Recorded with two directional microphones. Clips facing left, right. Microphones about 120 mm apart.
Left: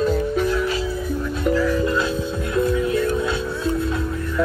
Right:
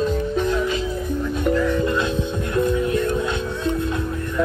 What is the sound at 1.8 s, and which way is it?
Music, 20° right (ahead or behind).